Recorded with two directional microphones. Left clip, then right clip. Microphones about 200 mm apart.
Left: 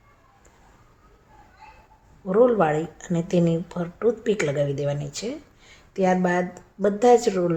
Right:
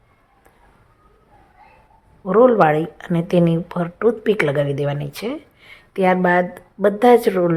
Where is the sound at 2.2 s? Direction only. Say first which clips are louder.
Right 6 dB; 20° right (ahead or behind).